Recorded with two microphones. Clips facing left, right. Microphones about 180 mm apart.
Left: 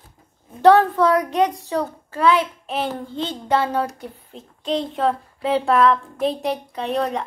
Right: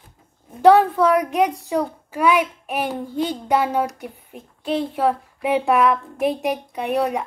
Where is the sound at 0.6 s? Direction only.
10° right (ahead or behind).